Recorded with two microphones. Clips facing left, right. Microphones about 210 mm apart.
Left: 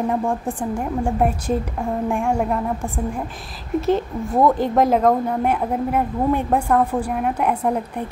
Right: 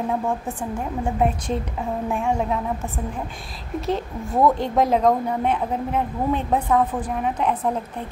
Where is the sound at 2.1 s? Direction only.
10° left (ahead or behind).